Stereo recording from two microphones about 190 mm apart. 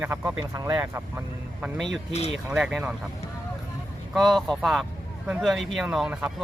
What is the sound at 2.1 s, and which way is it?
Speech, 35° left (ahead or behind).